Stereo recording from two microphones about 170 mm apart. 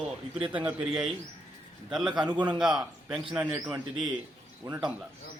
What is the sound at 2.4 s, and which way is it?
Speech, 25° right (ahead or behind).